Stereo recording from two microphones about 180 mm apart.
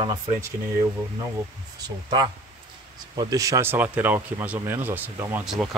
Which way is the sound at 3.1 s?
20° right (ahead or behind).